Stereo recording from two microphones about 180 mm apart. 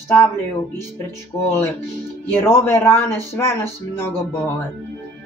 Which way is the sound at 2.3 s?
15° left (ahead or behind).